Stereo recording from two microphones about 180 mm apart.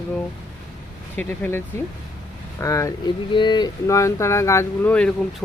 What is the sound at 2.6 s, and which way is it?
Speech, 15° left (ahead or behind).